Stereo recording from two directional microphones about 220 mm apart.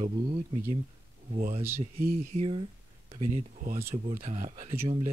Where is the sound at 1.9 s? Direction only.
40° right (ahead or behind).